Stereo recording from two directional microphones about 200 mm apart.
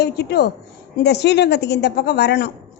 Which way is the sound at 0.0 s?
55° left (ahead or behind).